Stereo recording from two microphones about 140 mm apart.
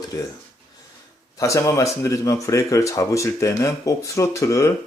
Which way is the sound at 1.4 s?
25° left (ahead or behind).